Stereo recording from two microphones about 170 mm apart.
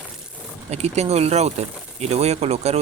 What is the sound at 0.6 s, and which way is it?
Speech, 40° right (ahead or behind).